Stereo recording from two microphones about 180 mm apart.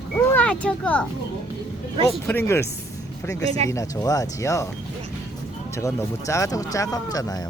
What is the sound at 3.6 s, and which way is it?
A woman's voice, 20° left (ahead or behind).